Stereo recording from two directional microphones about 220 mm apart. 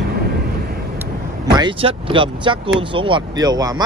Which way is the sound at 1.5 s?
20° right (ahead or behind).